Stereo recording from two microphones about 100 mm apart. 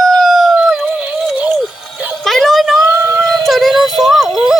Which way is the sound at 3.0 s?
35° right (ahead or behind).